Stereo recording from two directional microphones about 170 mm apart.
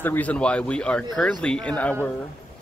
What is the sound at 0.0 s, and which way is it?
Speech, 10° left (ahead or behind).